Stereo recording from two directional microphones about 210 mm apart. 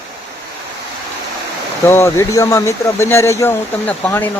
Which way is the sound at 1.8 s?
10° left (ahead or behind).